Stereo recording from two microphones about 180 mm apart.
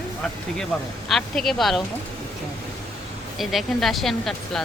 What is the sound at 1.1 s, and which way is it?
Speech, centre (ahead or behind).